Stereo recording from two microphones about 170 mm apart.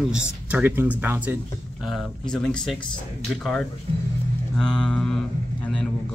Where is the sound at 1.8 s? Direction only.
Centre (ahead or behind).